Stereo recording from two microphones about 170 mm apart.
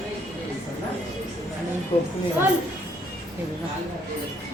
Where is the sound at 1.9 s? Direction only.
35° left (ahead or behind).